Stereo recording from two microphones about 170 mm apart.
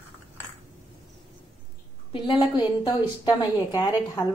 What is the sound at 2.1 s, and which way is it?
A woman's voice, 30° left (ahead or behind).